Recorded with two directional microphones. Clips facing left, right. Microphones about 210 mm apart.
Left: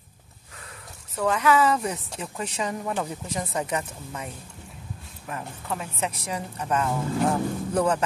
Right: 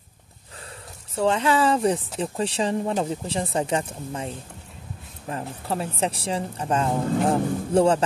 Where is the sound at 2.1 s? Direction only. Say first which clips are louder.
Right 6 dB; 30° right (ahead or behind).